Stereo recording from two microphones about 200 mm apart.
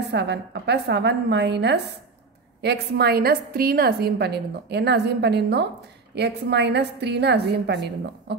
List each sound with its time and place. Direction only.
0.1 s a woman's voice: 60° right (ahead or behind)